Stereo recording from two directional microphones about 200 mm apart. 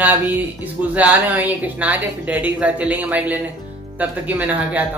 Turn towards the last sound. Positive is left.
turn(degrees=-10)  # may be behind; listen again after turning